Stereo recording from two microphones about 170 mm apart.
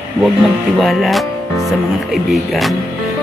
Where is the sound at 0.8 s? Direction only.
Centre (ahead or behind).